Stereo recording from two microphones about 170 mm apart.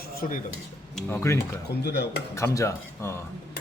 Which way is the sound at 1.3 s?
20° left (ahead or behind).